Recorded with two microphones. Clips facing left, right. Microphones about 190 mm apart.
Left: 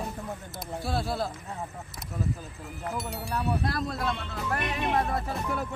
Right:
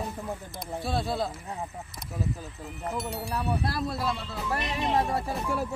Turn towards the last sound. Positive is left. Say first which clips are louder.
# right 1 dB
turn(degrees=-10)  # may be behind; listen again after turning